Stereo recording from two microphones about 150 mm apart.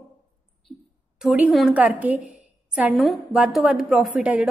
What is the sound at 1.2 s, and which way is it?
A woman's voice, 5° right (ahead or behind).